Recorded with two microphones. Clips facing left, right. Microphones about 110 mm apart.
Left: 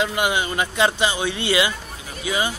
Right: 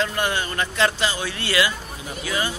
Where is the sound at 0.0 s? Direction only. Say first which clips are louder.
Left 2 dB; 15° left (ahead or behind).